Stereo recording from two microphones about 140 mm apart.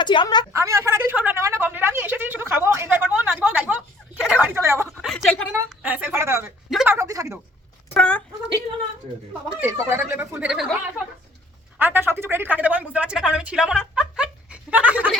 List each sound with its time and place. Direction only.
0.0 s a woman's voice: 35° left (ahead or behind)
0.5 s a woman's voice: 20° right (ahead or behind)
5.0 s speech: 5° left (ahead or behind)
5.5 s a woman's voice: 15° right (ahead or behind)
6.8 s a sound: 20° right (ahead or behind)
7.9 s a sound: 10° left (ahead or behind)
9.7 s speech: 20° right (ahead or behind)